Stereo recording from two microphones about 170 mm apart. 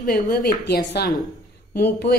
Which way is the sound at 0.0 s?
55° left (ahead or behind).